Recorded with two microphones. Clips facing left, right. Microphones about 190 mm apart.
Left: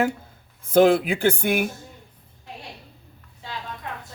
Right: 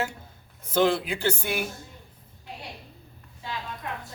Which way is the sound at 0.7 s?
50° left (ahead or behind).